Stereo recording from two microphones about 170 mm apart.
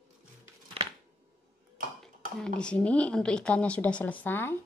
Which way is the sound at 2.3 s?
5° left (ahead or behind).